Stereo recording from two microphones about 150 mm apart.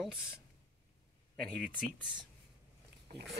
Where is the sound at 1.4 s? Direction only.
5° left (ahead or behind).